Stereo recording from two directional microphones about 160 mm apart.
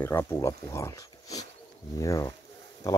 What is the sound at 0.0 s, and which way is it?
Speech, 15° left (ahead or behind).